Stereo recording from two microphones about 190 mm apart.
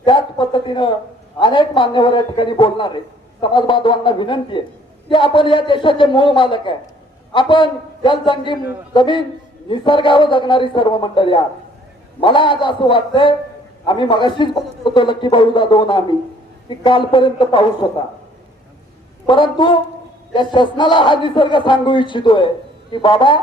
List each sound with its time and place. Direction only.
0.0 s a sound: 25° left (ahead or behind)
1.4 s a man's voice: 25° left (ahead or behind)
19.2 s a man's voice: 25° left (ahead or behind)